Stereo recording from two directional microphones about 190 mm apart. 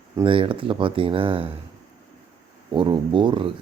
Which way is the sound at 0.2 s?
25° right (ahead or behind).